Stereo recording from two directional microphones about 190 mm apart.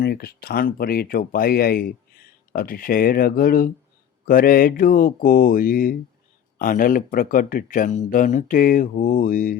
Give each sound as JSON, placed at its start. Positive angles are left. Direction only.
{"t": 0.0, "sound": "speech", "side_deg": 55}